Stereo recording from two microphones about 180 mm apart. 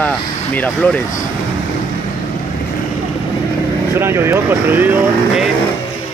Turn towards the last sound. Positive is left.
turn(degrees=-10)  # may be behind; listen again after turning